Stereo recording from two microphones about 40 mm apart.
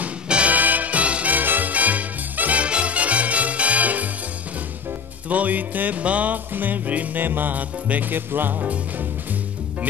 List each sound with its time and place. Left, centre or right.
0.5 s music: right
1.4 s music: right
1.7 s music: right
2.6 s music: right
5.3 s music: right
6.5 s music: right